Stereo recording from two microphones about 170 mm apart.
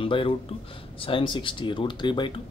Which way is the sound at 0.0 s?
30° left (ahead or behind).